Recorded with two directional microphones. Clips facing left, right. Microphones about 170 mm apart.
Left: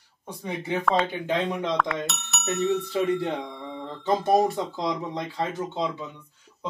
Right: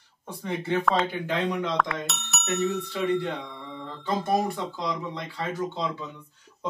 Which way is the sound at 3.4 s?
30° left (ahead or behind).